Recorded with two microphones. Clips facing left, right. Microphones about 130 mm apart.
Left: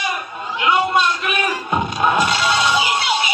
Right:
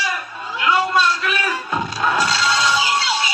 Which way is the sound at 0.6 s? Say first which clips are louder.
Left 1 dB; 20° left (ahead or behind).